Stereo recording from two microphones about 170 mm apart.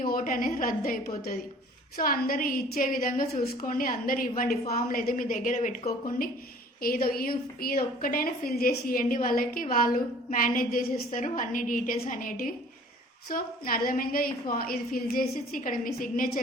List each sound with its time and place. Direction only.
0.0 s a woman's voice: 55° left (ahead or behind)
5.5 s speech: 40° left (ahead or behind)
6.8 s a woman's voice: 60° left (ahead or behind)